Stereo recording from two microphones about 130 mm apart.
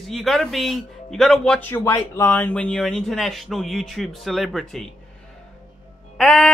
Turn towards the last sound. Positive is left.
turn(degrees=5)  # may be behind; listen again after turning